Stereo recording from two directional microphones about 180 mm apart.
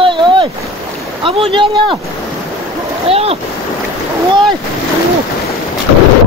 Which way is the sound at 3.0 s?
35° right (ahead or behind).